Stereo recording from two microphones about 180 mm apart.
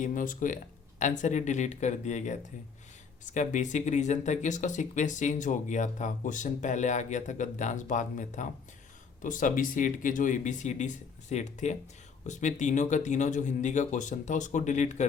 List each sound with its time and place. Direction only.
0.0 s speech: 45° left (ahead or behind)